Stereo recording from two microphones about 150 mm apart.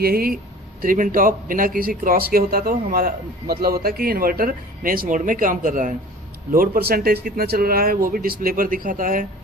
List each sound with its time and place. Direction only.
0.0 s speech: 85° right
0.8 s a man's voice: 65° right (ahead or behind)
6.5 s a man's voice: 80° right; by 9.2 s 65° right (ahead or behind)